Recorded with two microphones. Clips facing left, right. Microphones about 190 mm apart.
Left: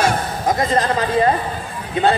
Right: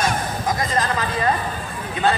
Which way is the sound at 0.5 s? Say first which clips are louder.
Left 6 dB; 30° left (ahead or behind).